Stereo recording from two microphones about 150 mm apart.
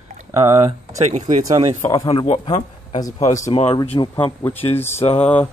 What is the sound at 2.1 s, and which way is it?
A man's voice, 40° left (ahead or behind).